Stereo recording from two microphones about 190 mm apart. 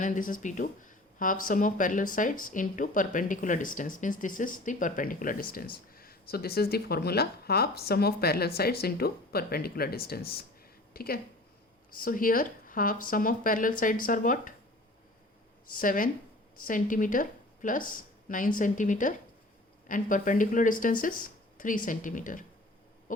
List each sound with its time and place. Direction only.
0.0 s speech: 45° left (ahead or behind)
15.7 s speech: 45° left (ahead or behind)